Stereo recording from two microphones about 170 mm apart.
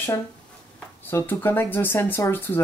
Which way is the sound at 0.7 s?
10° left (ahead or behind).